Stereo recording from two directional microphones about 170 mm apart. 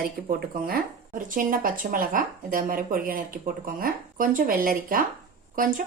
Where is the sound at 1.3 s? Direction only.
55° right (ahead or behind).